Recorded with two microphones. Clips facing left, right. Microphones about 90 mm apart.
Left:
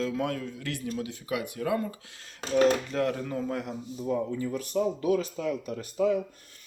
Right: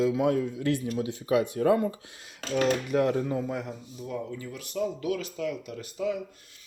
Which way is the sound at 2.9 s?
20° right (ahead or behind).